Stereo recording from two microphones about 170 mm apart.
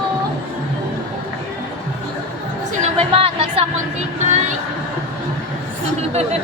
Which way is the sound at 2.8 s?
35° right (ahead or behind).